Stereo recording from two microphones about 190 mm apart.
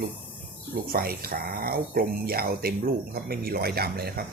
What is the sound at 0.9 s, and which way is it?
Speech, 55° right (ahead or behind).